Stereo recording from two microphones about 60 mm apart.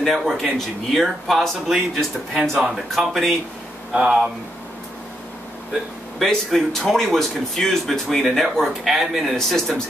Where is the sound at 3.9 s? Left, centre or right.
Centre.